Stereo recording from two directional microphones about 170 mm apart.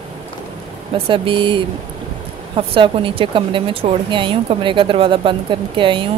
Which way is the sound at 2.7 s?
30° right (ahead or behind).